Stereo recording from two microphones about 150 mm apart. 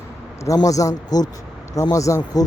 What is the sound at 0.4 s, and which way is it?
Speech, 25° left (ahead or behind).